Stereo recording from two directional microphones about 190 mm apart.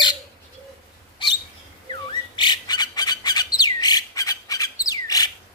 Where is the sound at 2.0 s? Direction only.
25° left (ahead or behind).